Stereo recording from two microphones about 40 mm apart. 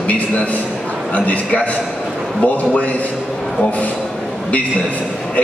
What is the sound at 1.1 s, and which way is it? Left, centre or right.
A man's voice, left.